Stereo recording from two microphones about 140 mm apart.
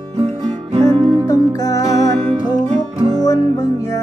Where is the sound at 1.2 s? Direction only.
25° left (ahead or behind).